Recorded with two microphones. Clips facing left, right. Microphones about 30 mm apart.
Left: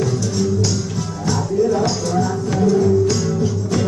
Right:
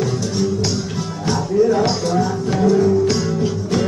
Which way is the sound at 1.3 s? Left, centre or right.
Right.